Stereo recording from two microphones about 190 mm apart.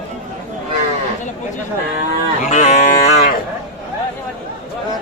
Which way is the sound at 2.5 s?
35° left (ahead or behind).